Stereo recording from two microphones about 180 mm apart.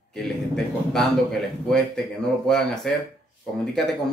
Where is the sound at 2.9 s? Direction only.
5° left (ahead or behind).